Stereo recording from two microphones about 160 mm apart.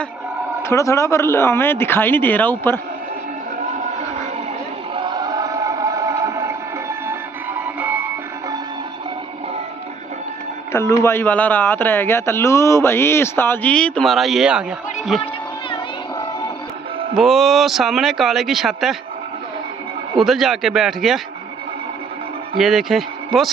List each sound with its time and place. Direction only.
0.6 s speech: 20° left (ahead or behind)
4.9 s chant: 30° right (ahead or behind)
7.8 s music: 10° right (ahead or behind)
10.7 s speech: 20° left (ahead or behind); by 15.3 s centre (ahead or behind)
17.1 s speech: centre (ahead or behind)
20.2 s speech: centre (ahead or behind)
22.6 s speech: centre (ahead or behind)